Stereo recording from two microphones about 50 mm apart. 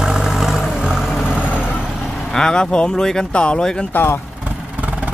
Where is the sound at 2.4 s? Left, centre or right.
Centre.